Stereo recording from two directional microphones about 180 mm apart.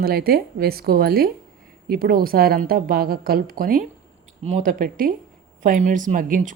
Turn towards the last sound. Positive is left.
turn(degrees=-50)  # may be behind; listen again after turning